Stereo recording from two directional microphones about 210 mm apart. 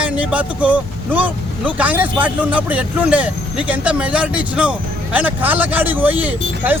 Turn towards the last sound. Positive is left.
turn(degrees=-10)  # may be behind; listen again after turning